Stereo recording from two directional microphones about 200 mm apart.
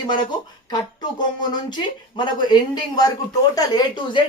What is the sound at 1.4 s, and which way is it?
Speech, 20° left (ahead or behind).